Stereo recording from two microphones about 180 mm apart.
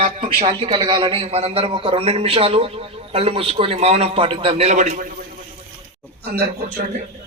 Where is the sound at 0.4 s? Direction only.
25° right (ahead or behind); by 5.1 s 45° right (ahead or behind).